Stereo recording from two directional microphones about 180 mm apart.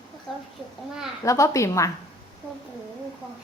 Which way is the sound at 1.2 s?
15° left (ahead or behind).